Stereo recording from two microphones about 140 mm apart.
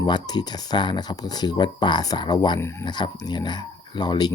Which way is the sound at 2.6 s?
20° left (ahead or behind).